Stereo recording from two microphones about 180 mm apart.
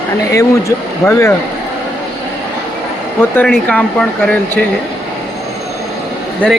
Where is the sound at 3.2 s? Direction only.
10° left (ahead or behind).